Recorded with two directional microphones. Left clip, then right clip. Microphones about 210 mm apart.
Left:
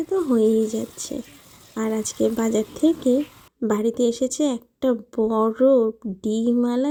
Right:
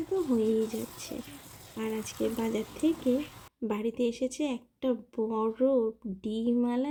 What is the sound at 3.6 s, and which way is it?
Speech, 30° left (ahead or behind).